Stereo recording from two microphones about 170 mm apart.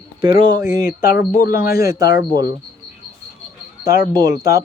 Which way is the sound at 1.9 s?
20° right (ahead or behind).